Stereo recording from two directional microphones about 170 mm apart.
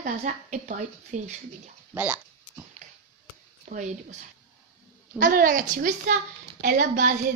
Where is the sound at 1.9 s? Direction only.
5° right (ahead or behind).